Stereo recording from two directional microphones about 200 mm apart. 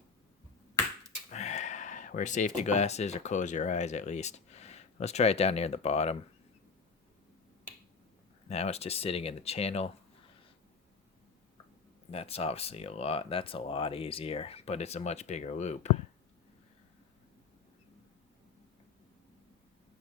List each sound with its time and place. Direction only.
1.3 s speech: 35° left (ahead or behind)
8.4 s speech: 30° left (ahead or behind)
12.1 s speech: 30° left (ahead or behind)